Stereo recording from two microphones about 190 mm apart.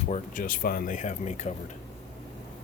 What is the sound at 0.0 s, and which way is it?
Speech, 40° left (ahead or behind).